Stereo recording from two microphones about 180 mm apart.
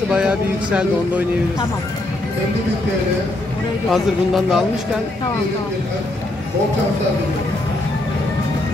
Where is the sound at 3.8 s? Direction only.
Centre (ahead or behind).